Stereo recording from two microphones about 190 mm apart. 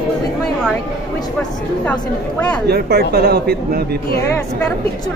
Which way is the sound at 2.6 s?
55° right (ahead or behind).